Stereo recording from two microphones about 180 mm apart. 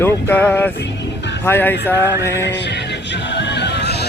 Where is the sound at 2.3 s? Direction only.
75° left (ahead or behind).